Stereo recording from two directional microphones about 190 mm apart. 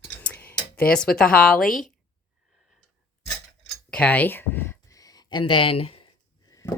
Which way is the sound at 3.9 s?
5° left (ahead or behind).